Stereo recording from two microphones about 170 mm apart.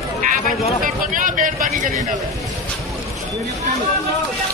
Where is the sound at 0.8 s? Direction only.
50° right (ahead or behind).